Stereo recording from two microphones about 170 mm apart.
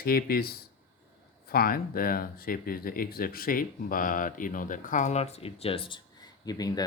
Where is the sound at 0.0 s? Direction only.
65° left (ahead or behind).